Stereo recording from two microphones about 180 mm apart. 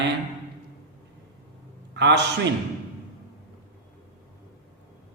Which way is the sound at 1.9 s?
70° right (ahead or behind).